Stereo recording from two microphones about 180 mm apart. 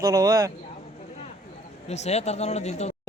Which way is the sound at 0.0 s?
20° right (ahead or behind).